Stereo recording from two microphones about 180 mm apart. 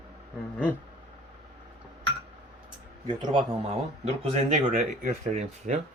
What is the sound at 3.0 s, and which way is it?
Speech, 25° right (ahead or behind).